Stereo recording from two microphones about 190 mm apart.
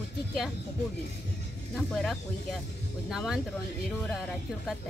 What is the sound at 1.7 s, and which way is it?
Speech, centre (ahead or behind).